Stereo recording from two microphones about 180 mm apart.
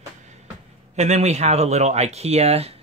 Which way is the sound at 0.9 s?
40° right (ahead or behind).